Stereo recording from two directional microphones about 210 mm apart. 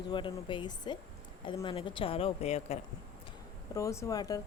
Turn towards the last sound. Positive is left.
turn(degrees=15)  # may be behind; listen again after turning